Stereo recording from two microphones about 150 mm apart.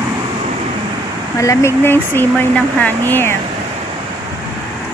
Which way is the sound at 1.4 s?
20° left (ahead or behind).